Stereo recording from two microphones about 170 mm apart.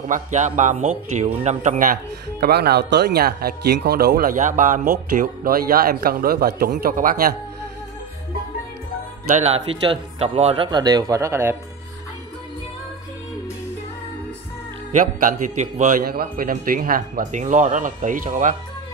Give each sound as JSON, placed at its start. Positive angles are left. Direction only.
{"t": 0.1, "sound": "speech", "side_deg": -45}
{"t": 2.4, "sound": "speech", "side_deg": -70}
{"t": 9.3, "sound": "speech", "side_deg": -40}
{"t": 14.9, "sound": "speech", "side_deg": -50}
{"t": 16.0, "sound": "speech", "side_deg": -65}